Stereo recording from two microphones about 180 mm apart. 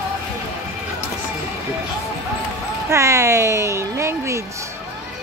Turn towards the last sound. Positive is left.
turn(degrees=-15)  # may be behind; listen again after turning